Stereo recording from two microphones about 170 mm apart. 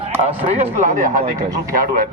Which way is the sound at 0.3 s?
40° right (ahead or behind).